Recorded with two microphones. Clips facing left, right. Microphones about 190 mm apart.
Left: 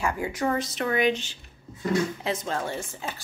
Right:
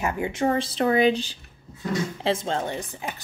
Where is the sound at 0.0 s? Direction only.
25° right (ahead or behind).